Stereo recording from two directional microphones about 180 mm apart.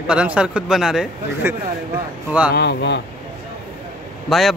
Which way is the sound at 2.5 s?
65° left (ahead or behind).